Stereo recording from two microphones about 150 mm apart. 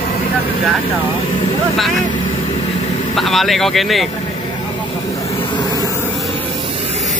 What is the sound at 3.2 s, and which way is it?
Speech, centre (ahead or behind).